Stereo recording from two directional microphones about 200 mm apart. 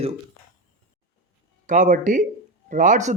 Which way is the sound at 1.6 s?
40° right (ahead or behind).